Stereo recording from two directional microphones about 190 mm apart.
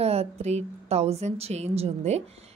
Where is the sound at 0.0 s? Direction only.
35° right (ahead or behind).